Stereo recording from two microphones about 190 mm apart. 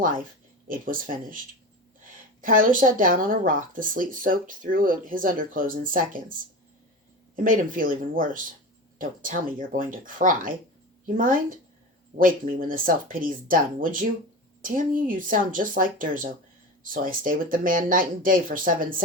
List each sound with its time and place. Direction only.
0.7 s speech: 45° right (ahead or behind)
2.0 s a sound: 45° right (ahead or behind)
2.6 s speech: 45° right (ahead or behind)
7.4 s speech: 45° right (ahead or behind)